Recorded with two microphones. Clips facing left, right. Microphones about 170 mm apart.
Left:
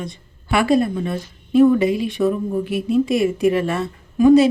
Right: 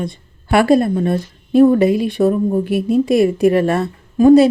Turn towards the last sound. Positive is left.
turn(degrees=-45)  # may be behind; listen again after turning